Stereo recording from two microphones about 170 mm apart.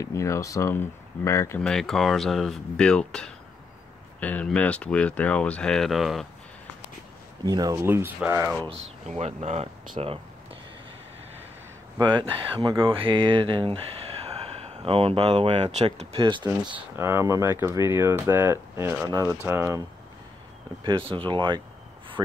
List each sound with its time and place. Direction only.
0.0 s speech: 15° left (ahead or behind)
1.6 s speech: 5° left (ahead or behind)
7.4 s speech: 20° right (ahead or behind)
8.6 s speech: 40° right (ahead or behind)
12.0 s speech: 30° right (ahead or behind)
16.9 s speech: 15° right (ahead or behind)
20.8 s speech: 30° right (ahead or behind)